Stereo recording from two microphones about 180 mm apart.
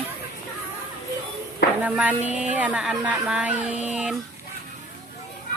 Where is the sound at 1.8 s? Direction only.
10° right (ahead or behind).